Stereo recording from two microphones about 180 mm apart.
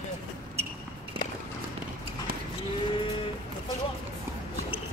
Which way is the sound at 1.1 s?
30° right (ahead or behind).